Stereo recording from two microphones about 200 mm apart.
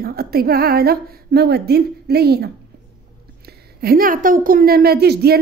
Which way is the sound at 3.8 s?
50° right (ahead or behind).